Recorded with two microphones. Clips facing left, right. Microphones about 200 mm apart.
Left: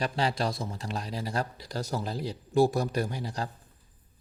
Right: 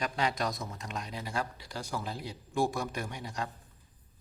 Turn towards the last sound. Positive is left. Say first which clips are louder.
# left 4 dB
turn(degrees=35)  # may be behind; listen again after turning